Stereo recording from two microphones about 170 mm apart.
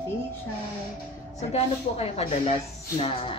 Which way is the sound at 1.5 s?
35° left (ahead or behind).